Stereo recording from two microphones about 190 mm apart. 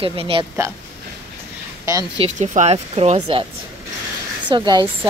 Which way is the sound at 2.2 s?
40° right (ahead or behind).